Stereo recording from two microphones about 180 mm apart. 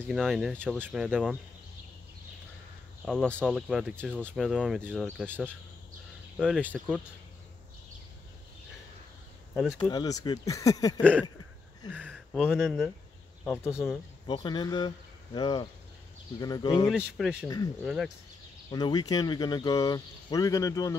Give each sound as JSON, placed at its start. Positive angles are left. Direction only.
{"t": 0.0, "sound": "speech", "side_deg": 0}
{"t": 1.0, "sound": "speech", "side_deg": 0}
{"t": 3.1, "sound": "speech", "side_deg": 5}
{"t": 6.3, "sound": "speech", "side_deg": 0}
{"t": 9.5, "sound": "speech", "side_deg": 0}
{"t": 9.8, "sound": "speech", "side_deg": 20}
{"t": 12.1, "sound": "speech", "side_deg": 0}
{"t": 13.4, "sound": "speech", "side_deg": 10}
{"t": 14.2, "sound": "speech", "side_deg": 25}
{"t": 16.9, "sound": "speech", "side_deg": -5}
{"t": 18.7, "sound": "speech", "side_deg": 25}